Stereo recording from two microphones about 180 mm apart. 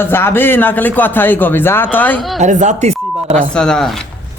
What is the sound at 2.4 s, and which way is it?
Speech, 40° right (ahead or behind).